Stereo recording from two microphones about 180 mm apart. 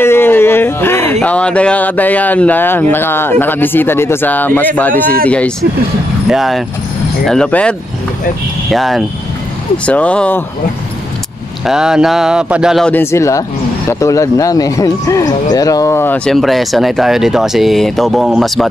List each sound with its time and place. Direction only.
0.0 s a sound: 10° left (ahead or behind)
1.2 s speech: 5° left (ahead or behind)
11.6 s speech: 5° right (ahead or behind); by 16.2 s 15° left (ahead or behind)
16.3 s speech: centre (ahead or behind)